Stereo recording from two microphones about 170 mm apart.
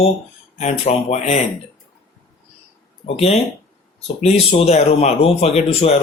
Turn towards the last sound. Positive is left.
turn(degrees=40)  # may be behind; listen again after turning